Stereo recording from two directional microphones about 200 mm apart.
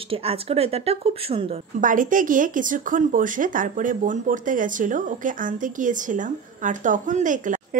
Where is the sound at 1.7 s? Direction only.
40° right (ahead or behind).